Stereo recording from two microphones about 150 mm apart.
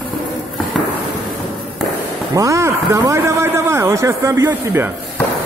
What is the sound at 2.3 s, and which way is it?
A man's voice, 20° right (ahead or behind).